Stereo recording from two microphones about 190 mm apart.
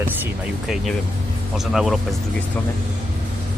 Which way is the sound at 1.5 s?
Centre (ahead or behind).